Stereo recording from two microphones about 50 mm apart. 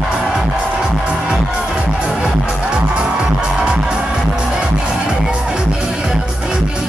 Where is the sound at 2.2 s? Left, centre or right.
Centre.